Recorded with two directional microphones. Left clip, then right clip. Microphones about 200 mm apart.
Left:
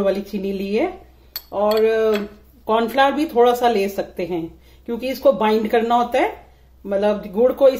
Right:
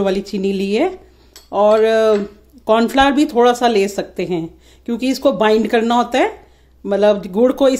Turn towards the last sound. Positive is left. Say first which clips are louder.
# right 1 dB
turn(degrees=-45)  # may be behind; listen again after turning